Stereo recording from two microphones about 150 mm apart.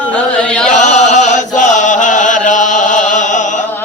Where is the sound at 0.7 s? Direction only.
55° left (ahead or behind).